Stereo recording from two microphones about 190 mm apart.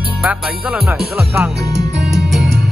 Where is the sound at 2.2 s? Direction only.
Centre (ahead or behind).